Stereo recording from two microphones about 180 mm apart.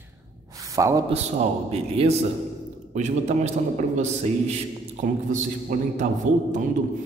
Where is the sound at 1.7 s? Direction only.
35° right (ahead or behind).